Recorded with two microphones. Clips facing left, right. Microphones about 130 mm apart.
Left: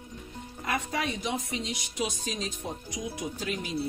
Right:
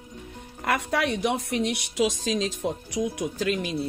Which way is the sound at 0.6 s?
75° right (ahead or behind).